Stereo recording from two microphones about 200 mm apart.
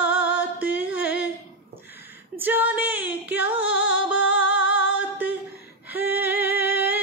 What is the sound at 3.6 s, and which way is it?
Music, 70° left (ahead or behind).